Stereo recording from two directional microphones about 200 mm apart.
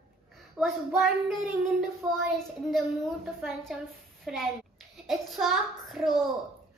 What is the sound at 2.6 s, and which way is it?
A child's voice, centre (ahead or behind).